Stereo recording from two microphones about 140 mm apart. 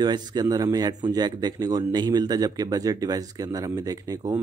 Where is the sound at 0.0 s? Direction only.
30° right (ahead or behind).